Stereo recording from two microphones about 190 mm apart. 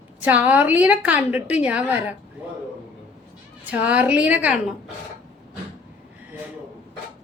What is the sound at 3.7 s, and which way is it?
Speech, 5° right (ahead or behind).